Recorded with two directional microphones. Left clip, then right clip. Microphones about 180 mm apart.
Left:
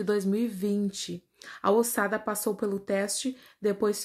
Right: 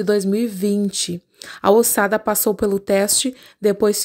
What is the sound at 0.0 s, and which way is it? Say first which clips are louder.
Speech: right 9 dB; 40° right (ahead or behind).